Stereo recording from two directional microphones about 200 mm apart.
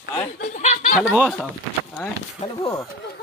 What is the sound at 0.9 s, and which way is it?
Speech, 5° right (ahead or behind).